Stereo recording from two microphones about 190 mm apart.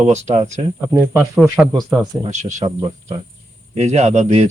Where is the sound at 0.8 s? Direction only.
15° right (ahead or behind).